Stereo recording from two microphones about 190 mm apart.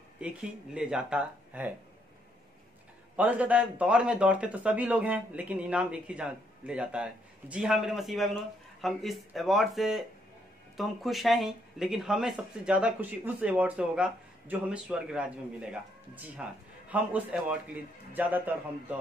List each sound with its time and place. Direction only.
0.2 s speech: 5° right (ahead or behind)
3.2 s a man's voice: 5° right (ahead or behind)